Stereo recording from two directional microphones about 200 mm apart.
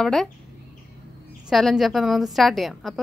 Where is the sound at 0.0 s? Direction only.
Centre (ahead or behind).